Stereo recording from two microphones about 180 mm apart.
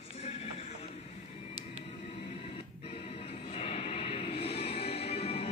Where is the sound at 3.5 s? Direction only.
35° left (ahead or behind).